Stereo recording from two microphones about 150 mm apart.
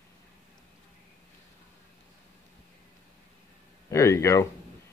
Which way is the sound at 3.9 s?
20° left (ahead or behind).